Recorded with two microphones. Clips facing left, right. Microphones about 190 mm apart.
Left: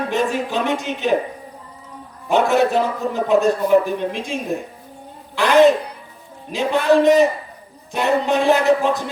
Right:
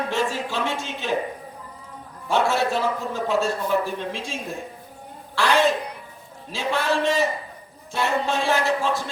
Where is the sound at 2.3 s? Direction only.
15° left (ahead or behind).